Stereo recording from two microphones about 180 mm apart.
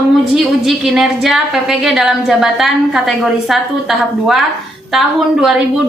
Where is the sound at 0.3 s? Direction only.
Centre (ahead or behind).